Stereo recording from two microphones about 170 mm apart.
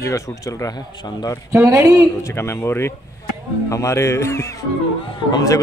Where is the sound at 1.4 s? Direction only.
15° right (ahead or behind).